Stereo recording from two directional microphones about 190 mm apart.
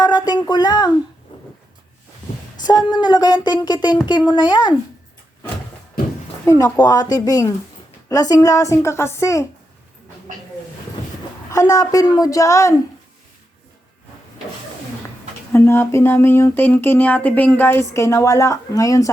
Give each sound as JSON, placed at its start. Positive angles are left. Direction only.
{"t": 0.0, "sound": "speech", "side_deg": 20}
{"t": 1.3, "sound": "a sound", "side_deg": 25}
{"t": 3.0, "sound": "speech", "side_deg": 20}
{"t": 6.4, "sound": "speech", "side_deg": 15}
{"t": 11.5, "sound": "speech", "side_deg": 15}
{"t": 15.5, "sound": "speech", "side_deg": 15}